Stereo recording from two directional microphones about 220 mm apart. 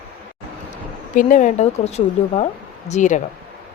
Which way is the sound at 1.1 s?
35° left (ahead or behind).